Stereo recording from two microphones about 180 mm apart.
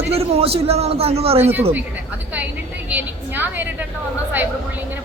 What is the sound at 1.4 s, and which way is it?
Speech, 10° right (ahead or behind).